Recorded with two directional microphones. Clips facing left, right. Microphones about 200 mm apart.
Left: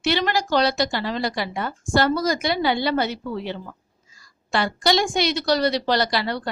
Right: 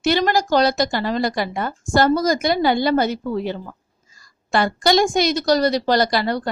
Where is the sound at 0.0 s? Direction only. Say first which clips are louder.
Right 4 dB; 45° right (ahead or behind).